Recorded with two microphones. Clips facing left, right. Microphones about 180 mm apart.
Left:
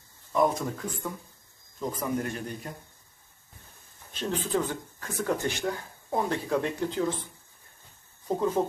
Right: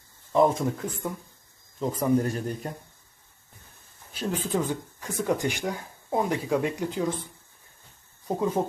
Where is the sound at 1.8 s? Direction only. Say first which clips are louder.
Right 6 dB; 30° right (ahead or behind).